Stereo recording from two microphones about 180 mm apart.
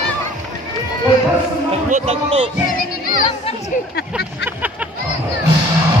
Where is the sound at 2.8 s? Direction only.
55° left (ahead or behind).